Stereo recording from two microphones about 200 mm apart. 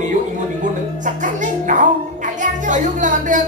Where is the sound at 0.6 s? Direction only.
40° right (ahead or behind).